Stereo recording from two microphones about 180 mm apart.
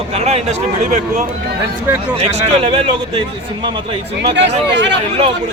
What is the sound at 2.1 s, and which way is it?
A man's voice, 35° right (ahead or behind).